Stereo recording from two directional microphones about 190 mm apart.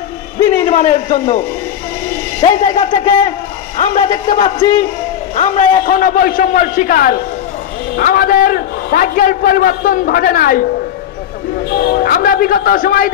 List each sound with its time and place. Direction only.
0.7 s a man's voice: 40° left (ahead or behind)
2.4 s a man's voice: 35° left (ahead or behind)
11.9 s a man's voice: 50° left (ahead or behind)